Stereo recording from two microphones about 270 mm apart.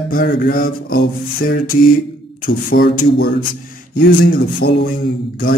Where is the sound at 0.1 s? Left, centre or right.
Left.